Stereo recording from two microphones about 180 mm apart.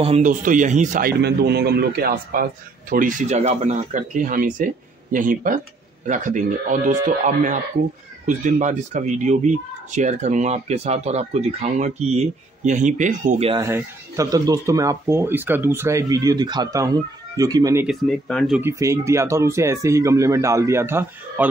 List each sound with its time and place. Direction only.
0.0 s a man's voice: 40° right (ahead or behind)
1.2 s a man's voice: 65° right (ahead or behind); by 13.5 s 45° right (ahead or behind)
13.6 s speech: 15° right (ahead or behind)
17.8 s speech: centre (ahead or behind)
18.6 s speech: 15° right (ahead or behind)